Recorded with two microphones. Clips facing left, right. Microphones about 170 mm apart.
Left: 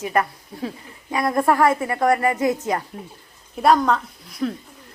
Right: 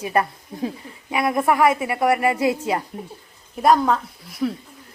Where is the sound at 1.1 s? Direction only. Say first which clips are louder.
Even; 5° right (ahead or behind).